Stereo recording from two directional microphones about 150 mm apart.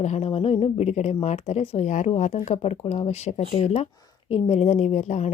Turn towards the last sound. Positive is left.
turn(degrees=50)  # may be behind; listen again after turning